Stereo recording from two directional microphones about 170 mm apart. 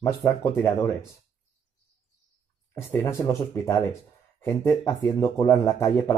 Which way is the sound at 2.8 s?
15° left (ahead or behind).